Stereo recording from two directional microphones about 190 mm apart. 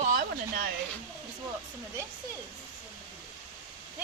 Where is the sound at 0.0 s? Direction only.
50° right (ahead or behind).